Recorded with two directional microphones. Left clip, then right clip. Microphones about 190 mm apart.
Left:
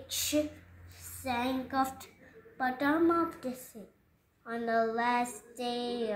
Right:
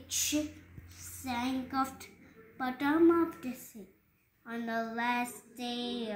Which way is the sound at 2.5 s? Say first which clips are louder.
Left 2 dB; 20° left (ahead or behind).